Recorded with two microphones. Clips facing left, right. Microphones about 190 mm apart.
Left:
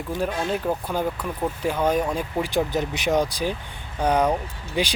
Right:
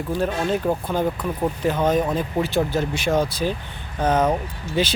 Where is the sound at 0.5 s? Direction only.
5° left (ahead or behind).